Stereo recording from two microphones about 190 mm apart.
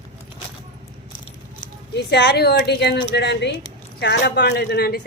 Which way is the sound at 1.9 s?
60° left (ahead or behind).